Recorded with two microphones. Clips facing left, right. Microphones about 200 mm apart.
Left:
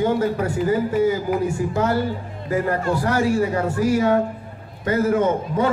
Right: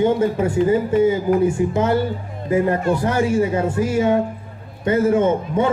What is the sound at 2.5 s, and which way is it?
Speech, 20° right (ahead or behind).